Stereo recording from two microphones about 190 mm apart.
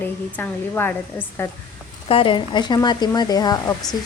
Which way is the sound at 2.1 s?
25° left (ahead or behind).